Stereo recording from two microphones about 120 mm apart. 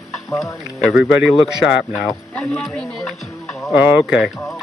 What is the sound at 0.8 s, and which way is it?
Speech, 5° right (ahead or behind).